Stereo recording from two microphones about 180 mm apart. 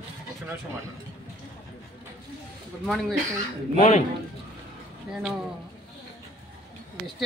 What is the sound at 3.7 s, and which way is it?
Speech, 35° left (ahead or behind).